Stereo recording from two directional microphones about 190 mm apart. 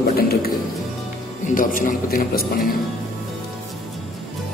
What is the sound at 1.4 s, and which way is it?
Speech, 45° left (ahead or behind).